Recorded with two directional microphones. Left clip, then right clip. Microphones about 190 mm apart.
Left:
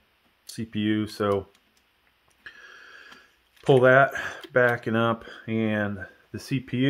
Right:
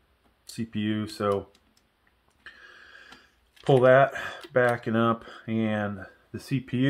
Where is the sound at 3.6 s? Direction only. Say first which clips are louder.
Left 1 dB; 50° left (ahead or behind).